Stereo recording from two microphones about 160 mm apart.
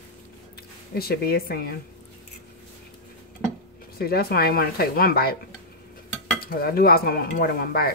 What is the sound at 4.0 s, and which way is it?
Stir, 75° left (ahead or behind).